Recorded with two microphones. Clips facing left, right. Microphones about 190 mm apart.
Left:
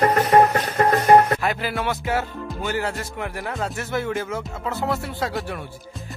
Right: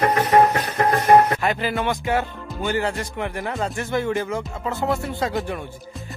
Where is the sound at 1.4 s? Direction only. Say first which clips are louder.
Right 2 dB; centre (ahead or behind).